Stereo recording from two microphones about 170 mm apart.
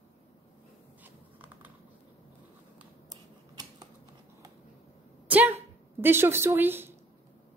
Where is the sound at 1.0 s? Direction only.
10° right (ahead or behind).